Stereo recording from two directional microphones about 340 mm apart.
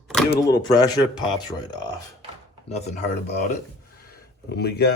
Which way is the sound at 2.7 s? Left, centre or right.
Centre.